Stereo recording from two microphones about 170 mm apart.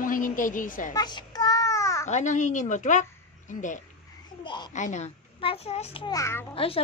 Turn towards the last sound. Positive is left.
turn(degrees=15)  # may be behind; listen again after turning